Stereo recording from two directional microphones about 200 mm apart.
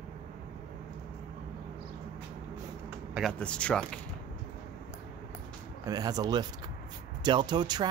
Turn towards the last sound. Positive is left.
turn(degrees=-20)  # may be behind; listen again after turning